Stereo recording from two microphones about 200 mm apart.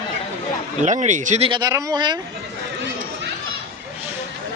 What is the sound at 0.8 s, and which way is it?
Speech, 35° right (ahead or behind).